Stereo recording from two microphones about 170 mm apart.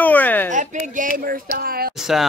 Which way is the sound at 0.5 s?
45° right (ahead or behind).